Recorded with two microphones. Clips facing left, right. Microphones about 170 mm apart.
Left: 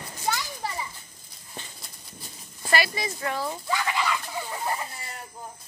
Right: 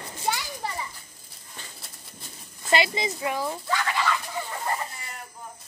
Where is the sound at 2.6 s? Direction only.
20° right (ahead or behind).